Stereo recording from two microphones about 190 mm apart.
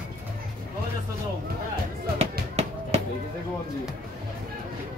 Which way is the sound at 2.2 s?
35° right (ahead or behind).